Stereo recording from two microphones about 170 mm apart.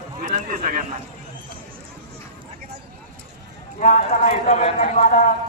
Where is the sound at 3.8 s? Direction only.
50° left (ahead or behind).